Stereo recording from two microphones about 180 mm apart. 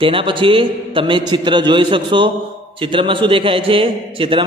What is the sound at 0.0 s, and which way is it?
A man's voice, 30° right (ahead or behind).